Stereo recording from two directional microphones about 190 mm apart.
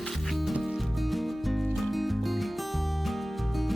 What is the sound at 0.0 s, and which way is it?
Music, centre (ahead or behind).